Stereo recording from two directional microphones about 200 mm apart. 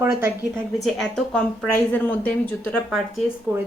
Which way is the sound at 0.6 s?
Centre (ahead or behind).